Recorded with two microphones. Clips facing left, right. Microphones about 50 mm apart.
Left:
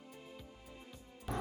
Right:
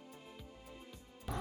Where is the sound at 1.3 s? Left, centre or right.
Centre.